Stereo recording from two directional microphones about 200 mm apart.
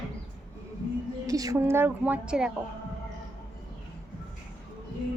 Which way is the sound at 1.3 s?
15° right (ahead or behind).